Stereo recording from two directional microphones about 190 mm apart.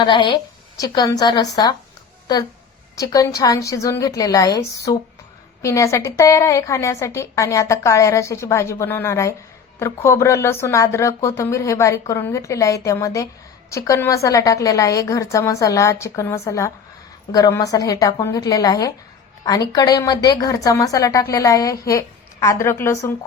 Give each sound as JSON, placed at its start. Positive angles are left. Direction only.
{"t": 0.0, "sound": "a woman's voice", "side_deg": 25}
{"t": 2.9, "sound": "a woman's voice", "side_deg": 15}